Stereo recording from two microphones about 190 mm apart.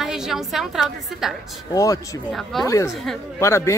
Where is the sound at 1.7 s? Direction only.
20° left (ahead or behind).